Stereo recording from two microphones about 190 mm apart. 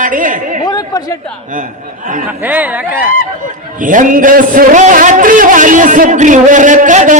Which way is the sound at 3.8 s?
45° right (ahead or behind).